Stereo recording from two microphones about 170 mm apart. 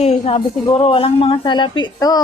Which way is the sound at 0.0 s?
35° left (ahead or behind).